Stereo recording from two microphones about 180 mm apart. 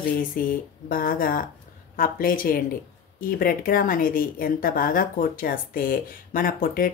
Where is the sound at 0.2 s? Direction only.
50° left (ahead or behind).